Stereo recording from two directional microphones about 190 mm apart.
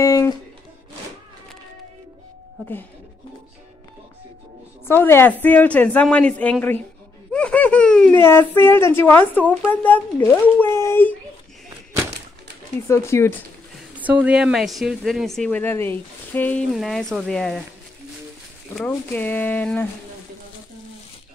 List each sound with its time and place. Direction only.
0.0 s a sound: 15° left (ahead or behind)
4.8 s speech: 10° left (ahead or behind)
12.8 s speech: 15° left (ahead or behind)
13.9 s speech: 10° right (ahead or behind)
18.8 s speech: 10° left (ahead or behind)